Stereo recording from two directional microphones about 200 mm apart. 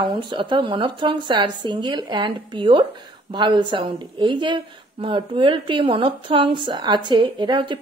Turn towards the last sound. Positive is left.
turn(degrees=-25)  # may be behind; listen again after turning